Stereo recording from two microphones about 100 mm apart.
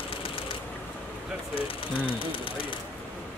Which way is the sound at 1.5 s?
65° left (ahead or behind).